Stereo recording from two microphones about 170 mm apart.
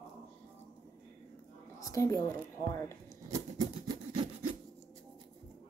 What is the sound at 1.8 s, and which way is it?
Speech, 20° left (ahead or behind).